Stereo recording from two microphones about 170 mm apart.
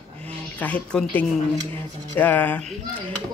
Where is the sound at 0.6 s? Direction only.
5° left (ahead or behind).